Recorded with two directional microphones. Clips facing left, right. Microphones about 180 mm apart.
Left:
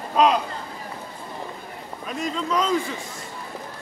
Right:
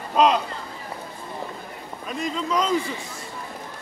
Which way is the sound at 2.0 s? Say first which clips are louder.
Even; centre (ahead or behind).